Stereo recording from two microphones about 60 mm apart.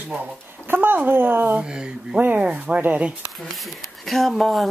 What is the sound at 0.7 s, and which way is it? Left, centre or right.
Speech, right.